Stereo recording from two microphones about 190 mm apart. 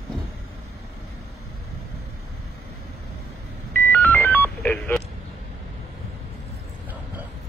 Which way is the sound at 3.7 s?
10° left (ahead or behind).